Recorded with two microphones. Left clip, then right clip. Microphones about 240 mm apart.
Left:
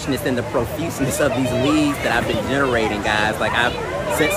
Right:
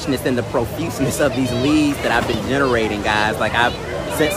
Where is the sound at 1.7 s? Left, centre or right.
Centre.